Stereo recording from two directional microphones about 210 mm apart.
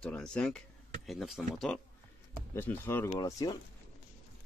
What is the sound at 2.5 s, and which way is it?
Speech, 10° left (ahead or behind).